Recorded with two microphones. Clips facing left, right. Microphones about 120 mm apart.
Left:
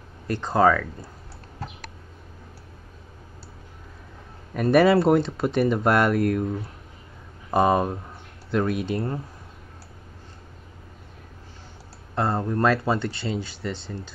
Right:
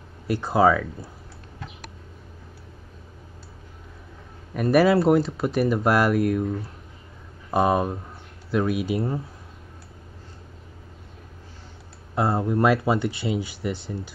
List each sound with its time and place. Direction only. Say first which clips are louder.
0.3 s speech: right 1 dB; 10° right (ahead or behind)
1.6 s a sound: left 4 dB; 35° left (ahead or behind)
4.6 s speech: left 1 dB; centre (ahead or behind)
12.2 s speech: right 2 dB; 10° right (ahead or behind)